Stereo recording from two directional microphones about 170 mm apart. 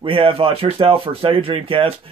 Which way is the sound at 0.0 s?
30° right (ahead or behind).